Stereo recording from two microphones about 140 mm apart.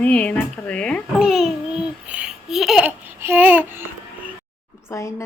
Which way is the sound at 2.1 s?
5° right (ahead or behind).